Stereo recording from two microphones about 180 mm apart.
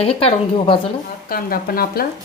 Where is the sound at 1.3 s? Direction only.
55° left (ahead or behind).